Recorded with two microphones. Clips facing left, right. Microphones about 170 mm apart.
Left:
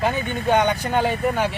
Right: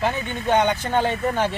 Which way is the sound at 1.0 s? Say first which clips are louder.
Left 1 dB; 10° left (ahead or behind).